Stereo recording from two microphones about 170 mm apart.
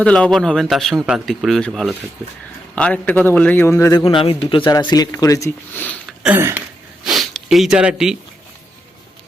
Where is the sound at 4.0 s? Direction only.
30° left (ahead or behind); by 5.9 s 10° left (ahead or behind).